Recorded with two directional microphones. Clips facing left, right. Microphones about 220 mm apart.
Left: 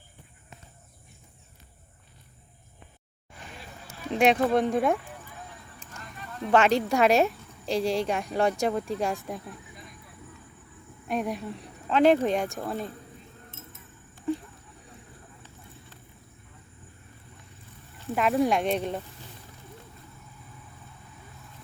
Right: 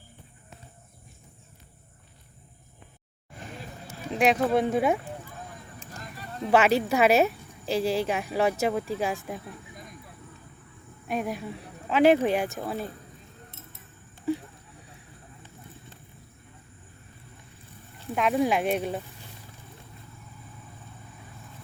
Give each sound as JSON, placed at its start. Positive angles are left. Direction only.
{"t": 3.3, "sound": "vehicle", "side_deg": -45}
{"t": 4.1, "sound": "a woman's voice", "side_deg": 0}
{"t": 5.9, "sound": "a sound", "side_deg": -35}
{"t": 6.5, "sound": "a woman's voice", "side_deg": -5}
{"t": 11.1, "sound": "a woman's voice", "side_deg": 0}
{"t": 18.1, "sound": "a woman's voice", "side_deg": 0}